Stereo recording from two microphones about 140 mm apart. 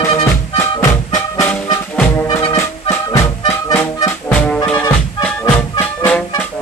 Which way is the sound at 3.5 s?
10° left (ahead or behind).